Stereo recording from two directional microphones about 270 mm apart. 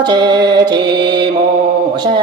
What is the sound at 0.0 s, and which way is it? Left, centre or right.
Music, centre.